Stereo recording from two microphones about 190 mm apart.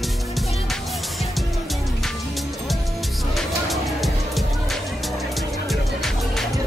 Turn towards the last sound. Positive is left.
turn(degrees=0)  # may be behind; listen again after turning